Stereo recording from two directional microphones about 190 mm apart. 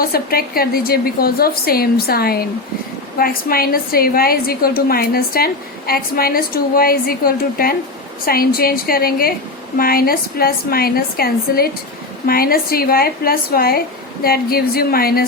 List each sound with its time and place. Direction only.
0.0 s a woman's voice: 50° left (ahead or behind)